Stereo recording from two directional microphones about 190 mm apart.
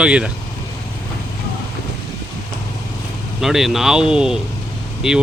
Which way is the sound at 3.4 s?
Centre (ahead or behind).